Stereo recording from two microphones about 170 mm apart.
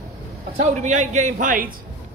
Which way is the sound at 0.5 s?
45° right (ahead or behind).